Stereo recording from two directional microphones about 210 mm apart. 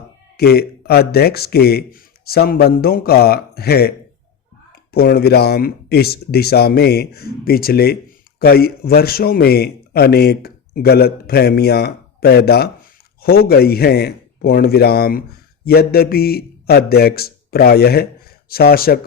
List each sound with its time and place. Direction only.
0.3 s a man's voice: 50° left (ahead or behind)